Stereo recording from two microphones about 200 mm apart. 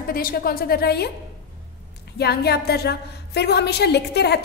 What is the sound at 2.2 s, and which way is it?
A woman's voice, 55° left (ahead or behind).